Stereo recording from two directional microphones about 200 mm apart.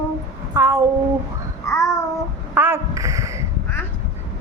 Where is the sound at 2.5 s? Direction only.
10° right (ahead or behind).